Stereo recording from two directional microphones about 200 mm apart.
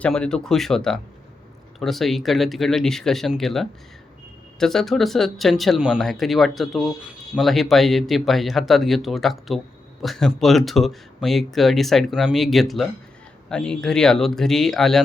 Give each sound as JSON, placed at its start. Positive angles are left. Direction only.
{"t": 0.0, "sound": "speech", "side_deg": 5}